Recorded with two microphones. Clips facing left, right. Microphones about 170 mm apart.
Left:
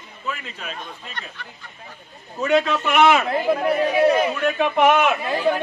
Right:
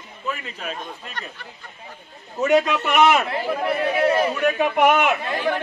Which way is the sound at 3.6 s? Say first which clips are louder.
Left 1 dB; 10° left (ahead or behind).